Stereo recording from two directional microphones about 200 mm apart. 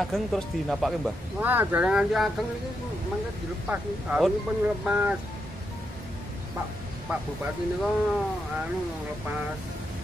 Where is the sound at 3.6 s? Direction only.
5° right (ahead or behind).